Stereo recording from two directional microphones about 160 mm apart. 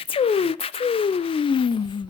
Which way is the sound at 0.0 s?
35° left (ahead or behind).